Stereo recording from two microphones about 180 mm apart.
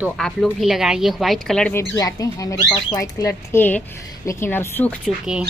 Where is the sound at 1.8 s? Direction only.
20° left (ahead or behind).